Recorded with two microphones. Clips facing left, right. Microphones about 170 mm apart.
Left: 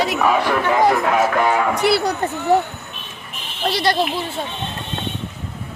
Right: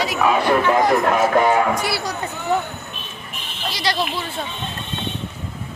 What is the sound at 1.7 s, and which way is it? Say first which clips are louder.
Speech: left 6 dB; 65° left (ahead or behind).